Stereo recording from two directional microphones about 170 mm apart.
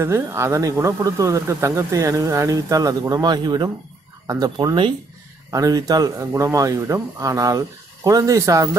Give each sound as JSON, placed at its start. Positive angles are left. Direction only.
{"t": 0.0, "sound": "speech", "side_deg": -15}